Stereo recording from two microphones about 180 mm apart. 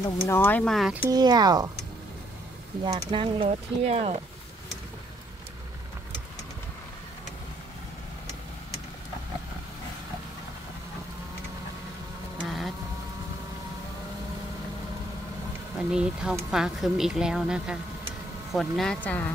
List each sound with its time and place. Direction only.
0.0 s speech: 10° left (ahead or behind)
1.1 s speech: 20° right (ahead or behind)
2.8 s speech: 25° right (ahead or behind)
12.4 s a sound: centre (ahead or behind)
15.9 s a woman's voice: 5° right (ahead or behind)